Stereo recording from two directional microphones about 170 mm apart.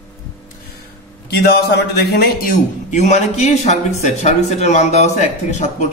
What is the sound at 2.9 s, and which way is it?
Speech, 45° left (ahead or behind).